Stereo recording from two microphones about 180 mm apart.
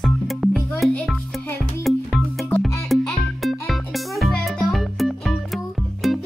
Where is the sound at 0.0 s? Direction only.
Centre (ahead or behind).